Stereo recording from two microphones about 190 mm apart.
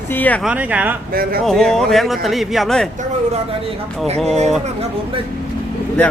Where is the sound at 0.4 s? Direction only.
10° right (ahead or behind).